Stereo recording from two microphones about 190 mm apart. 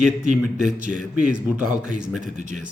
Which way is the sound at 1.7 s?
40° right (ahead or behind).